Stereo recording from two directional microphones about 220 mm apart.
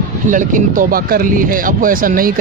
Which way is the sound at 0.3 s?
35° right (ahead or behind).